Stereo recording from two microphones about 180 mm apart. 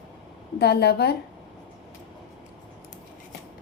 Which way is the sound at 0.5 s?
65° left (ahead or behind).